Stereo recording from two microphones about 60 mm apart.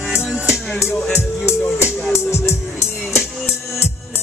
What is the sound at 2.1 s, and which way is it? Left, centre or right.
Music, left.